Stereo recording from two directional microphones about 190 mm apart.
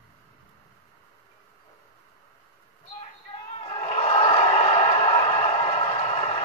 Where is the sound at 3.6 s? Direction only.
30° left (ahead or behind).